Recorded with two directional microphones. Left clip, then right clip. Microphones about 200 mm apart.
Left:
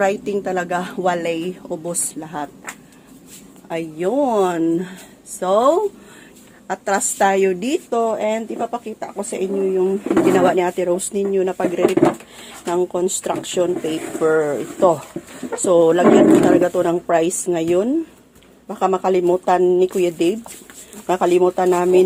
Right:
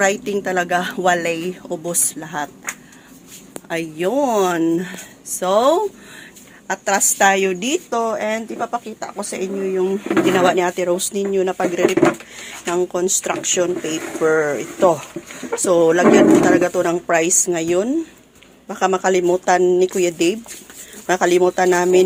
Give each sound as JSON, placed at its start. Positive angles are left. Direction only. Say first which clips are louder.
{"t": 0.0, "sound": "a woman's voice", "louder": "right 1 dB", "side_deg": 0}
{"t": 3.7, "sound": "a woman's voice", "louder": "right 1 dB", "side_deg": 0}
{"t": 14.2, "sound": "a woman's voice", "louder": "even", "side_deg": 5}
{"t": 18.7, "sound": "speech", "louder": "right 1 dB", "side_deg": 10}